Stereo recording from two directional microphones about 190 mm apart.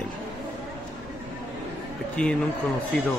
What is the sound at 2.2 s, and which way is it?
Speech, 5° left (ahead or behind).